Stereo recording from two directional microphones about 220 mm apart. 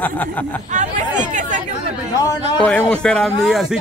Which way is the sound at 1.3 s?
35° right (ahead or behind).